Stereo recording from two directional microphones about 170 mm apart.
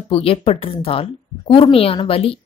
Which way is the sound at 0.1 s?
35° left (ahead or behind).